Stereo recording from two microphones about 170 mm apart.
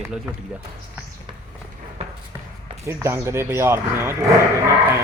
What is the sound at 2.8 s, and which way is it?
A man's voice, 15° right (ahead or behind).